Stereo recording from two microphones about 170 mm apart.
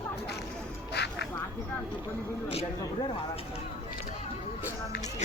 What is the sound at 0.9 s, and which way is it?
Quack, 80° left.